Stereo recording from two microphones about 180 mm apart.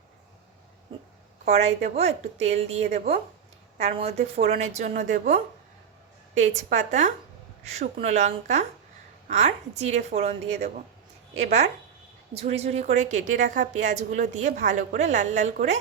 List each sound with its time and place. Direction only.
1.5 s a woman's voice: 35° right (ahead or behind)